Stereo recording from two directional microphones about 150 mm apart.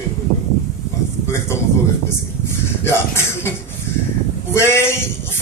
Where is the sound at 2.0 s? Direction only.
15° left (ahead or behind).